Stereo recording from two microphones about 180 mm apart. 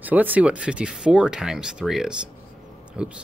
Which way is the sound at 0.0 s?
10° right (ahead or behind).